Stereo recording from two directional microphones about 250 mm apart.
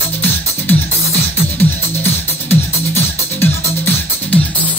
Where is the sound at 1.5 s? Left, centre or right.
Centre.